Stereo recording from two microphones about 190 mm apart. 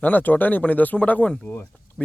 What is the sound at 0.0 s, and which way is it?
Speech, 10° left (ahead or behind).